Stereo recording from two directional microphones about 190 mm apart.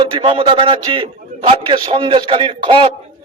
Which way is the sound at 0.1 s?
25° right (ahead or behind).